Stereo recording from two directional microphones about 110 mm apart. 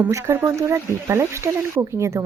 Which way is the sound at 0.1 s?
25° right (ahead or behind).